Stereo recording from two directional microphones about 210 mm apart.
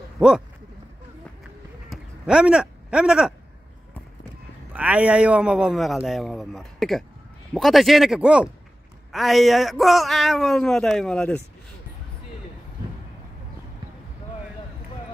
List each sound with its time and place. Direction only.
0.2 s a man's voice: 5° right (ahead or behind)
1.9 s a sound: 5° right (ahead or behind)
4.7 s a man's voice: 5° right (ahead or behind)